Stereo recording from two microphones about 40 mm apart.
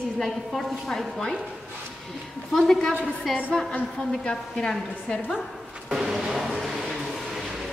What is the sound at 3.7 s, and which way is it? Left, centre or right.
Speech, left.